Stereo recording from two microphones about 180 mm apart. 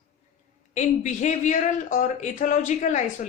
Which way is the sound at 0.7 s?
40° left (ahead or behind).